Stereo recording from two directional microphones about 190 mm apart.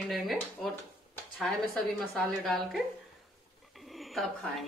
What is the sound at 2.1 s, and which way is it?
Speech, centre (ahead or behind).